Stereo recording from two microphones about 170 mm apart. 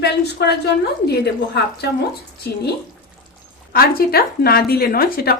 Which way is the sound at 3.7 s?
65° left (ahead or behind).